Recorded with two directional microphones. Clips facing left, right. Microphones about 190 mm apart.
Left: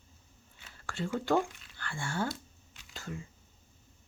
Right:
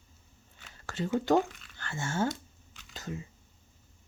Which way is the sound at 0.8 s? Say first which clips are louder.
Right 4 dB; 20° right (ahead or behind).